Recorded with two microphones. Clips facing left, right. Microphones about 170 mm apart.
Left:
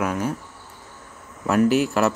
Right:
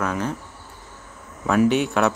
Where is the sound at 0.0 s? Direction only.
10° left (ahead or behind).